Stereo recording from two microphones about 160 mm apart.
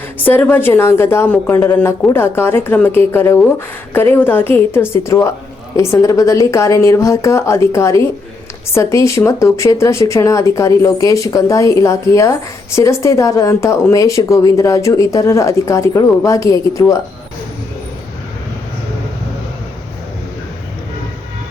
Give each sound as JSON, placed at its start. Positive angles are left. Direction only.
{"t": 0.3, "sound": "a woman's voice", "side_deg": 10}